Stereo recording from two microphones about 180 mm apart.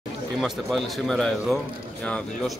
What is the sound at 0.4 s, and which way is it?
Speech, centre (ahead or behind).